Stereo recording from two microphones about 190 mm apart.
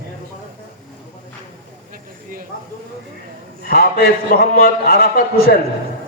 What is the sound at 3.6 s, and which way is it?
A man's voice, 55° left (ahead or behind).